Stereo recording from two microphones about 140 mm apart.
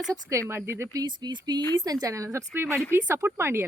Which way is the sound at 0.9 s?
30° right (ahead or behind).